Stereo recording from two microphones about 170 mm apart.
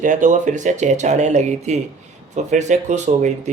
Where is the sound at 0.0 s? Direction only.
50° right (ahead or behind).